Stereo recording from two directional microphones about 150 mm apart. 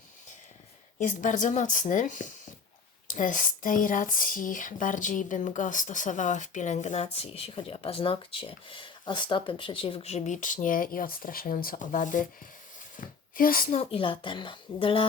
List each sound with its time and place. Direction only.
0.9 s speech: 60° left (ahead or behind)
13.0 s a sound: 70° left (ahead or behind)
13.7 s speech: 40° left (ahead or behind)